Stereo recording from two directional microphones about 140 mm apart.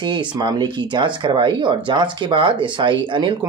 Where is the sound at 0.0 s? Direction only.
35° right (ahead or behind).